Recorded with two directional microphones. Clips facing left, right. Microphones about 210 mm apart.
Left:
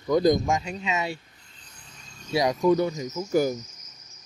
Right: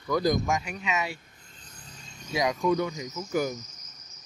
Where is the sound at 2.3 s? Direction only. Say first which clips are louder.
Left 4 dB; 35° left (ahead or behind).